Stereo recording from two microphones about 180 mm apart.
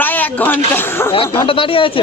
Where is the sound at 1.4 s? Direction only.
30° left (ahead or behind).